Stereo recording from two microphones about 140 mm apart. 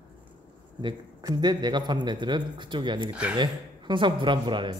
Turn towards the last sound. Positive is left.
turn(degrees=-35)  # may be behind; listen again after turning